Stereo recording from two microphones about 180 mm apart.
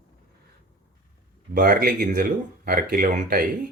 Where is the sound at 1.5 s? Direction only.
50° right (ahead or behind).